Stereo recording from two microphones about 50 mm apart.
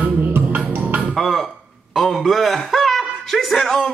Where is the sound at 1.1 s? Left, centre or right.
Centre.